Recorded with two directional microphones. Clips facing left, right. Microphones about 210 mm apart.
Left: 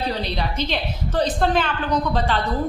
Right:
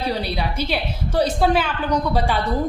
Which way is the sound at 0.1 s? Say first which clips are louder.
Right 1 dB; 10° right (ahead or behind).